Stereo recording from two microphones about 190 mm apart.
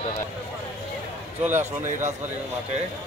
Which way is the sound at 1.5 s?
40° right (ahead or behind).